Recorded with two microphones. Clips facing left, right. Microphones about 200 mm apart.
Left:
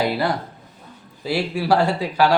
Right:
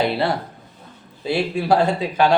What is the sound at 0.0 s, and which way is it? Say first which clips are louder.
A man's voice: right 1 dB; 25° right (ahead or behind).